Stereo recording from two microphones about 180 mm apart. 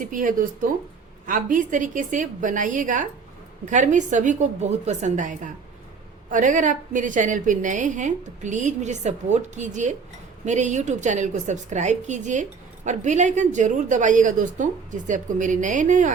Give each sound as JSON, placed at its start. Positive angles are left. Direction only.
{"t": 0.0, "sound": "a woman's voice", "side_deg": -45}